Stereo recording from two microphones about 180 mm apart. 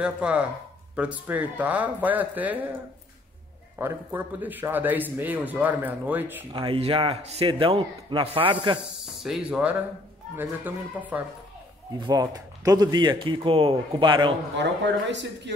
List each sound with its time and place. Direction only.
0.0 s a man's voice: 5° right (ahead or behind)
3.7 s a man's voice: 10° right (ahead or behind)
6.5 s a man's voice: 30° right (ahead or behind)
9.0 s a man's voice: centre (ahead or behind)
12.0 s a man's voice: 25° right (ahead or behind)
14.6 s speech: 75° right (ahead or behind)